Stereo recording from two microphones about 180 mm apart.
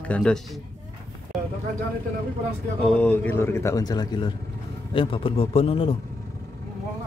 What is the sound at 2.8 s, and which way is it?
A man's voice, 10° left (ahead or behind).